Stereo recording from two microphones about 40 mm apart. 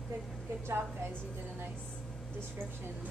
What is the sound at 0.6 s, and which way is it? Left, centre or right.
Speech, right.